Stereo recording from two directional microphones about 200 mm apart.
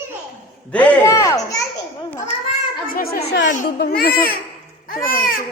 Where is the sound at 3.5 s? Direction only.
40° left (ahead or behind).